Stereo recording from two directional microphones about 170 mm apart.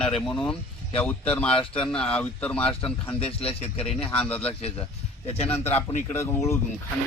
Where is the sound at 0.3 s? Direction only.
5° left (ahead or behind).